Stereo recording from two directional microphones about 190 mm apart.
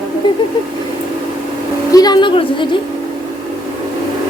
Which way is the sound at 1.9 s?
20° left (ahead or behind).